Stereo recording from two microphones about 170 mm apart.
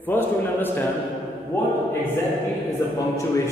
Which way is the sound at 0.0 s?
10° left (ahead or behind).